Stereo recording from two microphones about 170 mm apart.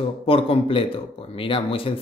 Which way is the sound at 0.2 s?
35° left (ahead or behind).